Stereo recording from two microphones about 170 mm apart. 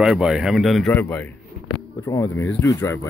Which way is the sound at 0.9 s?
10° left (ahead or behind).